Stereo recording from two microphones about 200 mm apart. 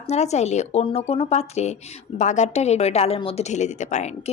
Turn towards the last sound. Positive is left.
turn(degrees=35)  # may be behind; listen again after turning